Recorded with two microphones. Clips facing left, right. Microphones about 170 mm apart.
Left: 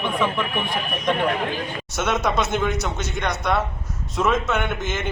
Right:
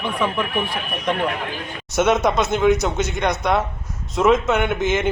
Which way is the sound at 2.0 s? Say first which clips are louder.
Right 6 dB; 55° right (ahead or behind).